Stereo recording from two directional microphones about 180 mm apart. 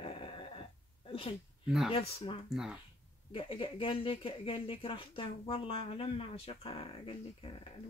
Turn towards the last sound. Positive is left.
turn(degrees=30)  # may be behind; listen again after turning